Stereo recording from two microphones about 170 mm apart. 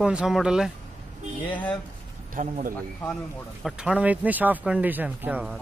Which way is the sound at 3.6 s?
5° right (ahead or behind).